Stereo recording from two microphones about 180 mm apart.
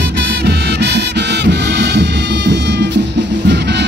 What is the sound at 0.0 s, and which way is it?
Music, 65° right (ahead or behind).